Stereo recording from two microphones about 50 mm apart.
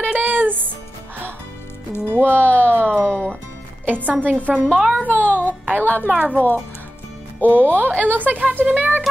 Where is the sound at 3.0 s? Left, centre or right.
Left.